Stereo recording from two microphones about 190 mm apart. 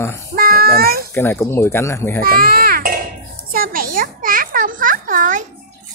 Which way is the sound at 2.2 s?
50° right (ahead or behind).